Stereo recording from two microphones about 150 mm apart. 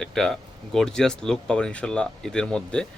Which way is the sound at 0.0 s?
5° left (ahead or behind).